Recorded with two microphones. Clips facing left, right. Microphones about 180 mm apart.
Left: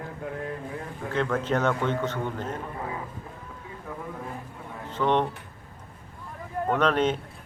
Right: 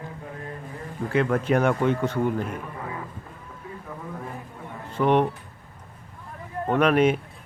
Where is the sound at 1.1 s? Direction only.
10° right (ahead or behind).